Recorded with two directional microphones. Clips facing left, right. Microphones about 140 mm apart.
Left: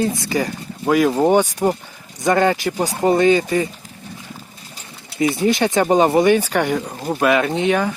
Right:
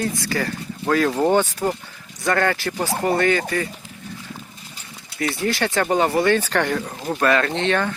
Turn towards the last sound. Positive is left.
turn(degrees=10)  # may be behind; listen again after turning